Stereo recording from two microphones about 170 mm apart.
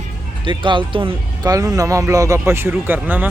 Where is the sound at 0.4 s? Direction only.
30° right (ahead or behind).